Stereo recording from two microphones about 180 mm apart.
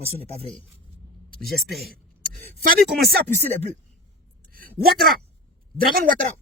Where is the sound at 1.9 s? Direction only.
50° right (ahead or behind).